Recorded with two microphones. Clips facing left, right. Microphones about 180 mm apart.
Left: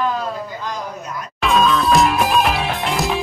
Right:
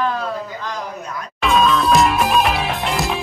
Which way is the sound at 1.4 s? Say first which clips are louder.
Even; centre (ahead or behind).